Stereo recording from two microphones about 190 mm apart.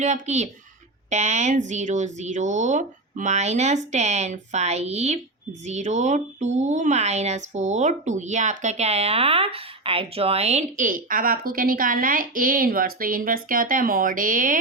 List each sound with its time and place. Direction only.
0.0 s speech: 40° right (ahead or behind)